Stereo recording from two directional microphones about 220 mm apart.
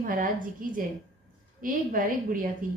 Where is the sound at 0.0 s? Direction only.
40° right (ahead or behind).